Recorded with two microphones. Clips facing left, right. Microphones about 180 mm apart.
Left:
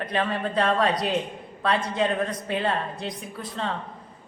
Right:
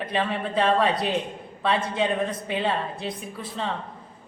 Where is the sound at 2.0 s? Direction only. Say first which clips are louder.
Even; 5° right (ahead or behind).